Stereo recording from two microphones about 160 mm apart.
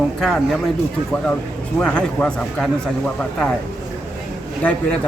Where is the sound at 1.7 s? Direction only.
5° left (ahead or behind).